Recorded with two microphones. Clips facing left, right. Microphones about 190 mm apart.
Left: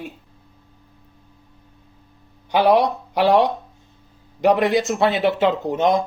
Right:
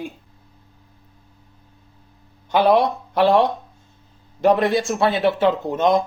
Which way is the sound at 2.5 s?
15° left (ahead or behind).